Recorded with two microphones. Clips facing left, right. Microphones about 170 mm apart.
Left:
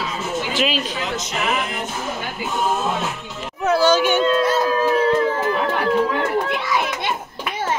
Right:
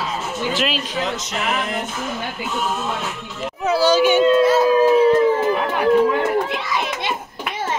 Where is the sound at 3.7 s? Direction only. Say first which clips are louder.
Right 1 dB; 10° right (ahead or behind).